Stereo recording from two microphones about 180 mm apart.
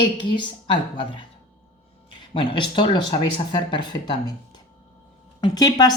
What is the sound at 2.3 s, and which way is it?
A woman's voice, 25° left (ahead or behind).